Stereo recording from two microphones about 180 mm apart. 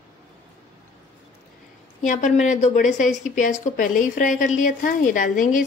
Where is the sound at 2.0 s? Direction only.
45° left (ahead or behind).